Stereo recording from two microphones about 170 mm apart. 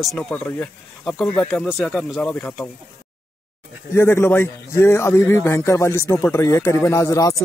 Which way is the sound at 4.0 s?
15° left (ahead or behind).